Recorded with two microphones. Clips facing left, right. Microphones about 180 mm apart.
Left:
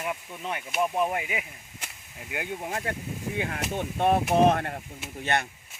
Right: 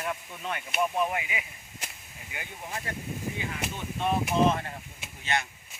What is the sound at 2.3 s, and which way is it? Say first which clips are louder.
Speech: left 7 dB; 65° left (ahead or behind).